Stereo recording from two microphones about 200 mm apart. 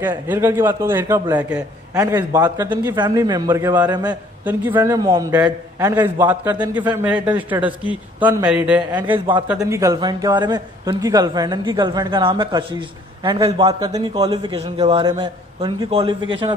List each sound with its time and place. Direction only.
0.3 s a man's voice: 10° right (ahead or behind)
4.5 s a man's voice: 10° right (ahead or behind)
14.8 s a man's voice: 30° right (ahead or behind)